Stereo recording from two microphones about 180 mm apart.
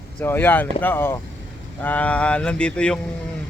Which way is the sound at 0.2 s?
10° left (ahead or behind).